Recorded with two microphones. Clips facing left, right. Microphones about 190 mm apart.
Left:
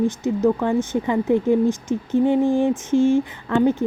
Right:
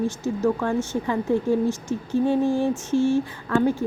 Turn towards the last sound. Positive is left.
turn(degrees=20)  # may be behind; listen again after turning